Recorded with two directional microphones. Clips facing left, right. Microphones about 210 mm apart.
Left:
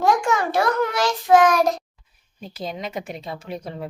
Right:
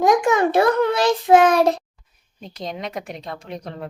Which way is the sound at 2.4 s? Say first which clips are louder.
Even; 5° left (ahead or behind).